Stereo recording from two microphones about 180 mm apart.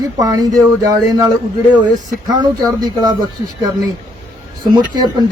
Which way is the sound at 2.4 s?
20° right (ahead or behind).